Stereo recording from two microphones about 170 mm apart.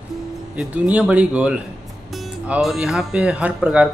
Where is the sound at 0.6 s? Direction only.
5° right (ahead or behind).